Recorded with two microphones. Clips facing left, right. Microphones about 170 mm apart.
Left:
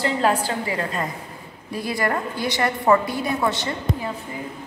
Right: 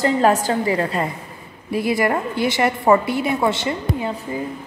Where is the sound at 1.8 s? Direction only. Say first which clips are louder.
Right 4 dB; 20° right (ahead or behind).